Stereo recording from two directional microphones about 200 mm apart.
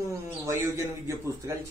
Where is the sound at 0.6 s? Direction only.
15° right (ahead or behind).